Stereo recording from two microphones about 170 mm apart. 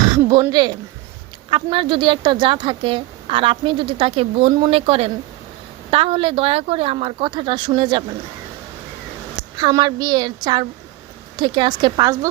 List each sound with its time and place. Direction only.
0.1 s a sound: 25° right (ahead or behind)
0.5 s a woman's voice: 25° right (ahead or behind)
9.6 s a woman's voice: 25° right (ahead or behind)